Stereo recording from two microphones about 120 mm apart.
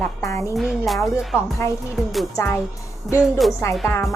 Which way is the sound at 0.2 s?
25° left (ahead or behind).